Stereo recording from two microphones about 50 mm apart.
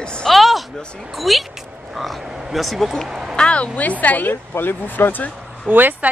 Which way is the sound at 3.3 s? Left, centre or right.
Left.